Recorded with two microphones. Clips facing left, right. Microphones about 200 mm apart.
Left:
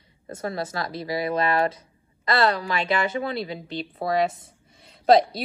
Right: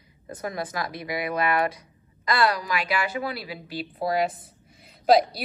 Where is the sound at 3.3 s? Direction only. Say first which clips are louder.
Left 4 dB; 5° right (ahead or behind).